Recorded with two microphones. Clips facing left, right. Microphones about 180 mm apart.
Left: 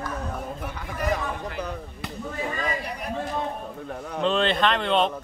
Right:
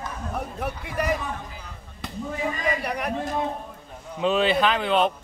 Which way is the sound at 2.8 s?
70° right (ahead or behind).